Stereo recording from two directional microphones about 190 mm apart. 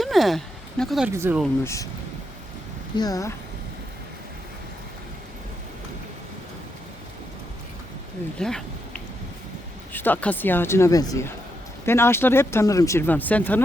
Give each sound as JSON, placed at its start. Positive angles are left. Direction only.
{"t": 0.0, "sound": "a sound", "side_deg": 0}
{"t": 1.1, "sound": "speech", "side_deg": -15}
{"t": 1.6, "sound": "speech", "side_deg": 15}
{"t": 2.9, "sound": "speech", "side_deg": 20}
{"t": 8.4, "sound": "speech", "side_deg": 5}
{"t": 9.9, "sound": "speech", "side_deg": 10}